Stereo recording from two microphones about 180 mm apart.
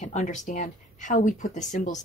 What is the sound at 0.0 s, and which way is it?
A woman's voice, 40° left (ahead or behind).